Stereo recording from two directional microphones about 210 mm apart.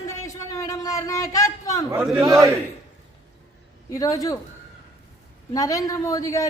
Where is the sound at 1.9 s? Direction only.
15° right (ahead or behind).